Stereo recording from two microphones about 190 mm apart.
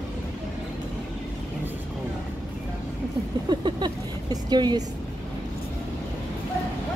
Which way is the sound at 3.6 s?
20° right (ahead or behind).